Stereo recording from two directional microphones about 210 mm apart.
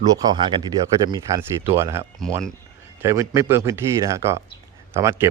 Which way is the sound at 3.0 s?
15° right (ahead or behind).